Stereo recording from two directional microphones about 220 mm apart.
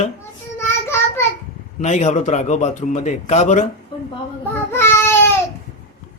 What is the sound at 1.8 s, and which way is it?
Speech, 30° left (ahead or behind).